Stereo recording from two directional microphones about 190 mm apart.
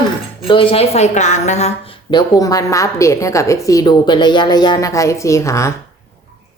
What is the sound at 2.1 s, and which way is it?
A woman's voice, 20° left (ahead or behind).